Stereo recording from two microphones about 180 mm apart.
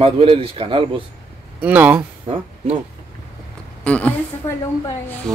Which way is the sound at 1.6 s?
10° right (ahead or behind).